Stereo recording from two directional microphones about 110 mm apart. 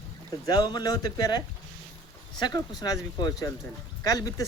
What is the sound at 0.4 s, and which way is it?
Speech, 40° left (ahead or behind).